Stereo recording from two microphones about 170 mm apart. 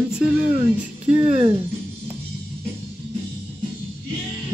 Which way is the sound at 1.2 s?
35° right (ahead or behind).